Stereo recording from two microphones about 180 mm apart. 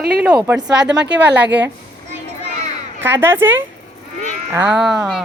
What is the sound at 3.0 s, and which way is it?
A woman's voice, 10° right (ahead or behind).